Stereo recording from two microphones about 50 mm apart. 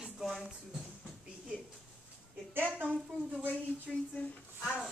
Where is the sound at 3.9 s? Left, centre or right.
Centre.